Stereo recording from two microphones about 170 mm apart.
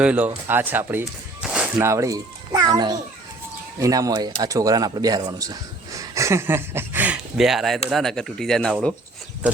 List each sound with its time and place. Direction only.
0.0 s speech: 10° right (ahead or behind)
1.8 s a child's voice: 15° right (ahead or behind); by 8.7 s 5° left (ahead or behind)